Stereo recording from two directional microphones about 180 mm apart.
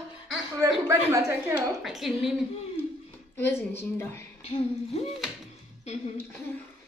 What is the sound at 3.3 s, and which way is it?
Speech, 10° left (ahead or behind).